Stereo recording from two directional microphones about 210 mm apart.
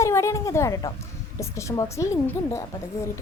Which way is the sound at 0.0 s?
15° left (ahead or behind).